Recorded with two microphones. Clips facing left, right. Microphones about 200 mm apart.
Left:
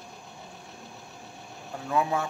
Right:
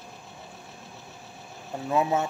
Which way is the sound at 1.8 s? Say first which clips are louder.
Right 2 dB; 20° right (ahead or behind).